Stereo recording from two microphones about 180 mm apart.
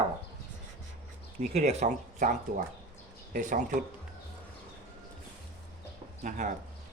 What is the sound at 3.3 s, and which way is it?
Speech, 45° right (ahead or behind).